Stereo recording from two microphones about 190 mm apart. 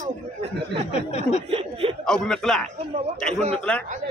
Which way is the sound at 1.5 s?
30° right (ahead or behind).